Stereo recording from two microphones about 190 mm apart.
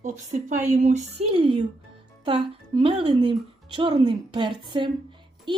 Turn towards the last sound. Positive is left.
turn(degrees=-25)  # may be behind; listen again after turning